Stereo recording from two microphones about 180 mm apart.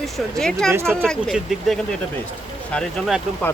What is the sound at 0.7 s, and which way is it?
Speech, 15° right (ahead or behind).